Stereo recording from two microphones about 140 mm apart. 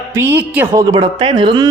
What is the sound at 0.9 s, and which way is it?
Speech, 35° right (ahead or behind).